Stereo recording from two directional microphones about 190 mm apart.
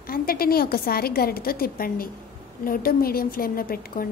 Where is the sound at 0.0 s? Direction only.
50° left (ahead or behind).